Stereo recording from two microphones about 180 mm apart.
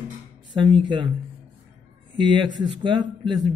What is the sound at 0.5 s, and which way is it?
Speech, 25° right (ahead or behind).